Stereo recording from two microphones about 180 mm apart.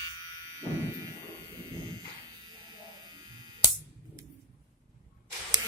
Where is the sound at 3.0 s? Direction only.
25° right (ahead or behind).